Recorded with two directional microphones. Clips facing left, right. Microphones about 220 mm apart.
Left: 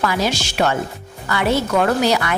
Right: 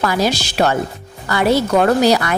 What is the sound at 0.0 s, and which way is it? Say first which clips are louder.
A woman's voice: right 3 dB; 40° right (ahead or behind).